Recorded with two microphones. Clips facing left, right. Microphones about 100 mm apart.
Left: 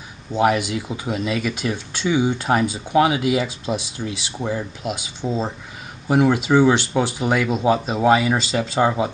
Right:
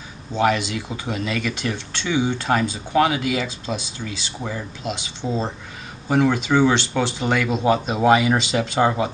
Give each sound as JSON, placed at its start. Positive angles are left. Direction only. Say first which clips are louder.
{"t": 0.3, "sound": "speech", "louder": "left 2 dB", "side_deg": 10}